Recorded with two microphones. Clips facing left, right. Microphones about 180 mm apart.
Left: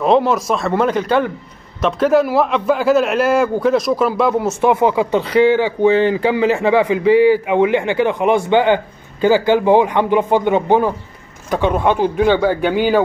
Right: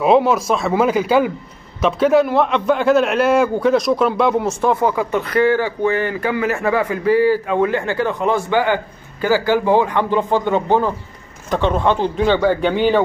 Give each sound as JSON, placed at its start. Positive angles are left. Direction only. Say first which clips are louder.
{"t": 0.0, "sound": "a man's voice", "louder": "even", "side_deg": -5}
{"t": 4.5, "sound": "speech", "louder": "left 3 dB", "side_deg": 20}